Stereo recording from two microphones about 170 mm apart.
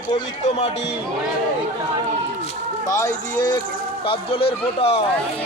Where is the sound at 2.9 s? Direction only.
20° left (ahead or behind).